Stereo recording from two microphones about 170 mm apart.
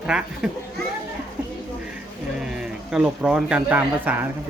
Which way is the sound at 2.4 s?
5° right (ahead or behind).